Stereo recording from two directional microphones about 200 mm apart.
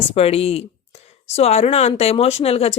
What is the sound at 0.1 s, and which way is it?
Speech, 30° left (ahead or behind).